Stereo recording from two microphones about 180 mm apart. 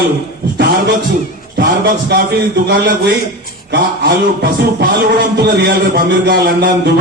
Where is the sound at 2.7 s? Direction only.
70° right (ahead or behind).